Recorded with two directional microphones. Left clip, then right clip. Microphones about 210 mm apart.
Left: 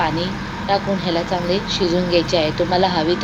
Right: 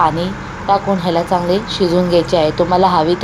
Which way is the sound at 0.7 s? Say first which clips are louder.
Right 5 dB; 10° right (ahead or behind).